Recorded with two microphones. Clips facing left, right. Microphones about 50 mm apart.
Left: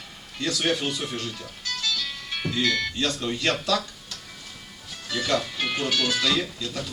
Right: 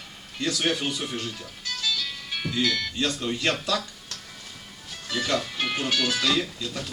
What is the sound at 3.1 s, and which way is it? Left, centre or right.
Speech, centre.